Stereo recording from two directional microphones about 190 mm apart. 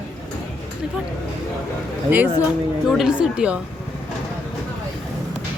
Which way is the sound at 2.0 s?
10° right (ahead or behind).